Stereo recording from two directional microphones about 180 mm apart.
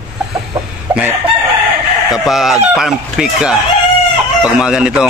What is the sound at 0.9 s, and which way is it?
Chicken, 5° right (ahead or behind).